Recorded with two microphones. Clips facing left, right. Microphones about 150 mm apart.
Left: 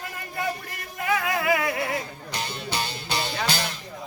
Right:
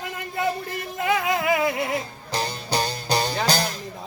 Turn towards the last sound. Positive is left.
turn(degrees=-40)  # may be behind; listen again after turning